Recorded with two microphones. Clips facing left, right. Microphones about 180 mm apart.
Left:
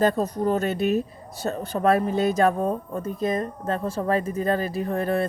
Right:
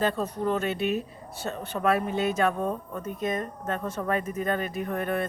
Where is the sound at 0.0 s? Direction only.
40° left (ahead or behind).